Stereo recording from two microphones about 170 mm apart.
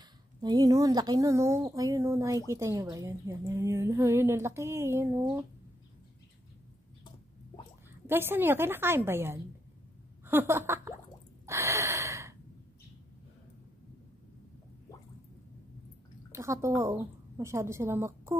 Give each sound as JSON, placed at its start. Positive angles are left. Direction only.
{"t": 0.4, "sound": "speech", "side_deg": -20}
{"t": 8.1, "sound": "speech", "side_deg": -10}
{"t": 11.4, "sound": "gasp", "side_deg": -15}
{"t": 16.3, "sound": "a woman's voice", "side_deg": -15}